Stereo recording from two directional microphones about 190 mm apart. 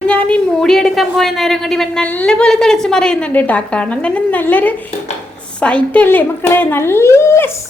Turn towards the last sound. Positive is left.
turn(degrees=15)  # may be behind; listen again after turning